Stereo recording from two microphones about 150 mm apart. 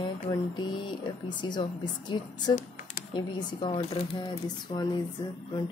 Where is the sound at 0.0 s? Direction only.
30° left (ahead or behind).